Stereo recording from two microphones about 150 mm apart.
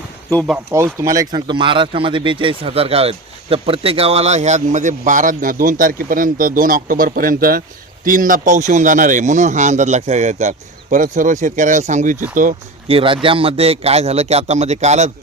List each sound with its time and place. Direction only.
0.7 s speech: 15° right (ahead or behind); by 7.6 s 75° right (ahead or behind)
8.0 s a man's voice: 65° right (ahead or behind)
12.9 s speech: 35° right (ahead or behind)